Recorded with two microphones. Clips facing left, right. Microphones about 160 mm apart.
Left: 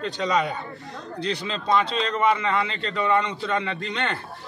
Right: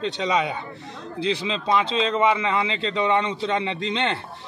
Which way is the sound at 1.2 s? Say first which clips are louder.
Right 4 dB; 90° right.